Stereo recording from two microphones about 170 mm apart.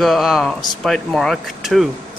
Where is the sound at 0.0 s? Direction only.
Centre (ahead or behind).